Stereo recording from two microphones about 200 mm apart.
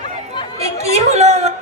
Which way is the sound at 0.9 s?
35° right (ahead or behind).